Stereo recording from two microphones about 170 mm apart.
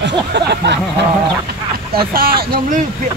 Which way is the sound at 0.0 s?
90° right.